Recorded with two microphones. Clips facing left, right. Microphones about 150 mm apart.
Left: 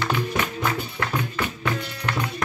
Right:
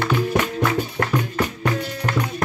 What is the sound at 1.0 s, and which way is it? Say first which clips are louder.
Music: right 4 dB; 50° right (ahead or behind).